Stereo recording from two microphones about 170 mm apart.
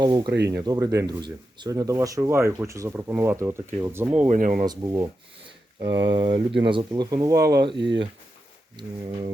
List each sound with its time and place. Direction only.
0.0 s speech: 25° right (ahead or behind)
0.3 s speech: 85° right
0.5 s speech: 20° right (ahead or behind)
4.3 s speech: 50° right (ahead or behind)
4.6 s speech: 20° right (ahead or behind)
7.3 s speech: 65° right (ahead or behind)
7.8 s speech: 90° right
8.7 s speech: 30° right (ahead or behind)